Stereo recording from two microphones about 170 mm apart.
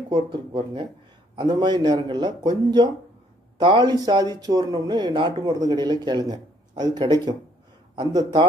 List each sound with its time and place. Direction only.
0.1 s speech: 30° right (ahead or behind)